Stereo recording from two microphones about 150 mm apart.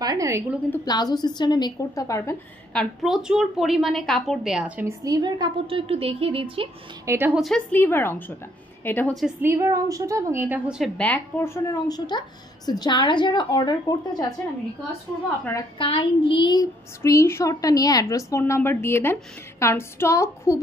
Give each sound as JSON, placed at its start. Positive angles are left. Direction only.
{"t": 0.0, "sound": "a woman's voice", "side_deg": -25}
{"t": 0.8, "sound": "speech", "side_deg": 25}
{"t": 2.7, "sound": "a woman's voice", "side_deg": 0}
{"t": 5.0, "sound": "a woman's voice", "side_deg": -25}
{"t": 7.1, "sound": "a woman's voice", "side_deg": -15}
{"t": 7.3, "sound": "a woman's voice", "side_deg": 0}
{"t": 7.7, "sound": "a woman's voice", "side_deg": 15}
{"t": 9.4, "sound": "a woman's voice", "side_deg": -20}
{"t": 10.8, "sound": "speech", "side_deg": 10}
{"t": 15.8, "sound": "speech", "side_deg": 35}